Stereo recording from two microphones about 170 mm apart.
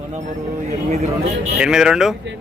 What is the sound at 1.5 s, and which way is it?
Speech, 5° right (ahead or behind).